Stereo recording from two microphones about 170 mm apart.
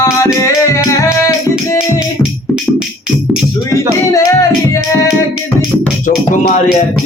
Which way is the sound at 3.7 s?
20° left (ahead or behind).